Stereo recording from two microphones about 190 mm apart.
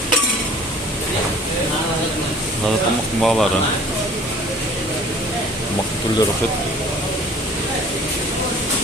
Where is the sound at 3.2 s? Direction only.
Centre (ahead or behind).